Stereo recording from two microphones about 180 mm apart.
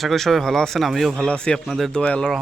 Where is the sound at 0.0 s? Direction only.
Centre (ahead or behind).